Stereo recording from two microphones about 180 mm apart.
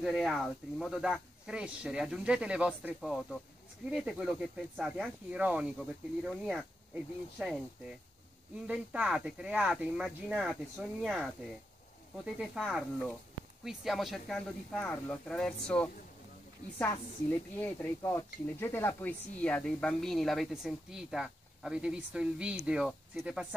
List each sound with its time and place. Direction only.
0.0 s speech: centre (ahead or behind)
8.6 s speech: 5° right (ahead or behind)
12.4 s a woman's voice: centre (ahead or behind)